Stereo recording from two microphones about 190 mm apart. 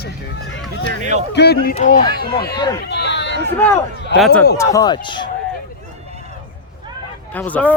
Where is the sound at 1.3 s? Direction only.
60° left (ahead or behind).